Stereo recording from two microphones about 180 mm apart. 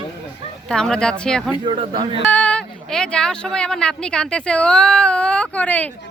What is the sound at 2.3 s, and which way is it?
Speech, 10° left (ahead or behind).